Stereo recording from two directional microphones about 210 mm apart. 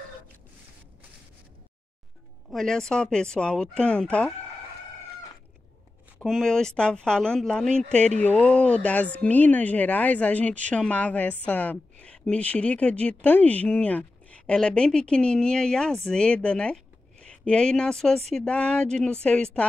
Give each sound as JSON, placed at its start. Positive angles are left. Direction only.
{"t": 2.5, "sound": "a woman's voice", "side_deg": 0}
{"t": 6.1, "sound": "a woman's voice", "side_deg": 0}